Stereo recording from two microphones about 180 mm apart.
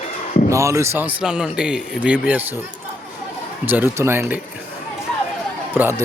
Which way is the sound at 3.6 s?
10° right (ahead or behind).